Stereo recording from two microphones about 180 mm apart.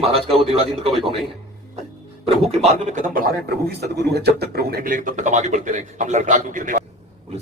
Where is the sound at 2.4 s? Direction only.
35° right (ahead or behind).